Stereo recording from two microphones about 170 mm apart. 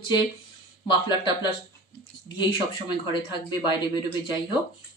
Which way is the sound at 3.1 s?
30° left (ahead or behind).